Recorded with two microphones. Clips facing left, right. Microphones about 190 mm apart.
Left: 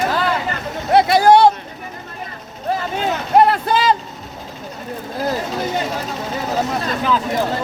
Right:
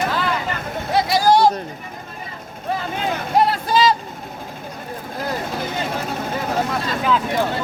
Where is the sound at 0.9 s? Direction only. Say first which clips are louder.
Left 5 dB; 60° left (ahead or behind).